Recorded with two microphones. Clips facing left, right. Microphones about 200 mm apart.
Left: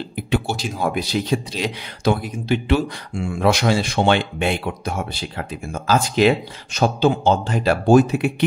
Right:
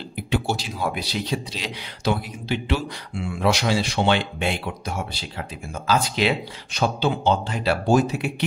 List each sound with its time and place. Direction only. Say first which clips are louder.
0.6 s speech: left 5 dB; 50° left (ahead or behind)